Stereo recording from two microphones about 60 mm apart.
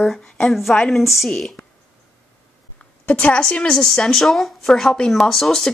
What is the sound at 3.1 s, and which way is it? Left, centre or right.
Speech, left.